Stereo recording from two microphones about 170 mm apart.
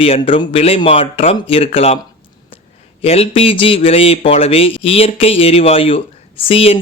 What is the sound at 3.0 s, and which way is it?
Speech, 35° left (ahead or behind).